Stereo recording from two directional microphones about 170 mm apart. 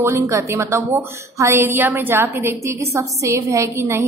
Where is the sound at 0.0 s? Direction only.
15° right (ahead or behind).